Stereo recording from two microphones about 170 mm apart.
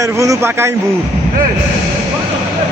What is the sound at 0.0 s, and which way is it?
Speech, 20° right (ahead or behind).